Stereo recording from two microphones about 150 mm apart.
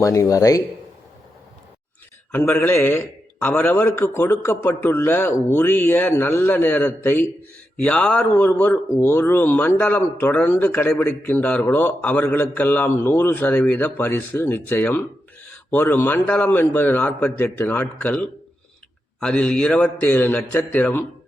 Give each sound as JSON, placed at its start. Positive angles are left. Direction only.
{"t": 0.0, "sound": "speech", "side_deg": 20}
{"t": 2.3, "sound": "speech", "side_deg": 15}